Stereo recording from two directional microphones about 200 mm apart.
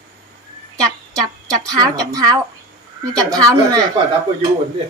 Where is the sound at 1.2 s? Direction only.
20° right (ahead or behind).